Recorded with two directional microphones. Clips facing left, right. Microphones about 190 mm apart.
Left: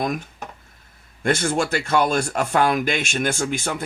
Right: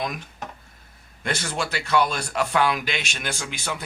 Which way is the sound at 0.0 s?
45° left (ahead or behind).